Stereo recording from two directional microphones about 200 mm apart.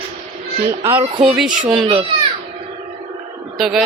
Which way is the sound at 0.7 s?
10° right (ahead or behind).